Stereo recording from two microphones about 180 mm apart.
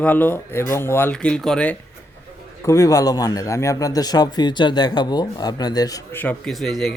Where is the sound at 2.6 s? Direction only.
20° left (ahead or behind).